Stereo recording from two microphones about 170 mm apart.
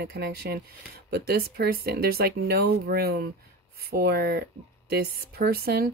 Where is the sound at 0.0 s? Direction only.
65° right (ahead or behind).